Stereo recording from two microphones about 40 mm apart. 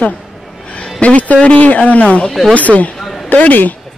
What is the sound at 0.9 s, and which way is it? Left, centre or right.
A man's voice, left.